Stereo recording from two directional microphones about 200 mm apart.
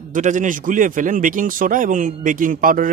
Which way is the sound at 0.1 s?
40° right (ahead or behind).